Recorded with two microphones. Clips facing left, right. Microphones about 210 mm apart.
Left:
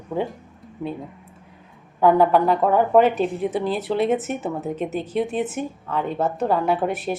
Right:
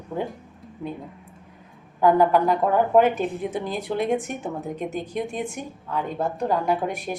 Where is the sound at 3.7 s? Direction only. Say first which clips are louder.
Even; 5° left (ahead or behind).